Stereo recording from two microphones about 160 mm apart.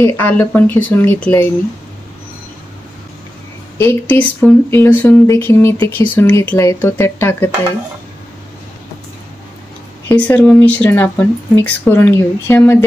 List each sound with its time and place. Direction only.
0.0 s speech: 15° left (ahead or behind)
3.7 s speech: 15° left (ahead or behind)
10.0 s speech: 10° left (ahead or behind)